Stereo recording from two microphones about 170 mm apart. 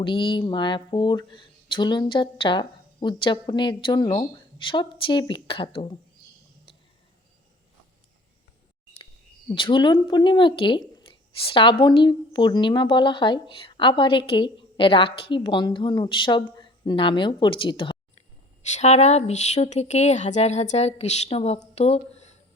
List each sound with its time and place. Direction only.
0.0 s speech: 30° left (ahead or behind)
9.5 s speech: 30° left (ahead or behind)
18.6 s a woman's voice: 40° left (ahead or behind)